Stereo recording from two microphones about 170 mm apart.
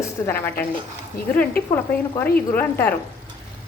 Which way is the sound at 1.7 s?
15° left (ahead or behind).